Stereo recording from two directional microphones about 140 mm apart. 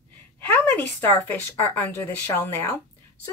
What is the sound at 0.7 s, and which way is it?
Speech, 15° left (ahead or behind).